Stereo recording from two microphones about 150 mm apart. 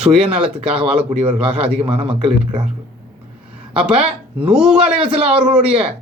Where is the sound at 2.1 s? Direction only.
5° right (ahead or behind).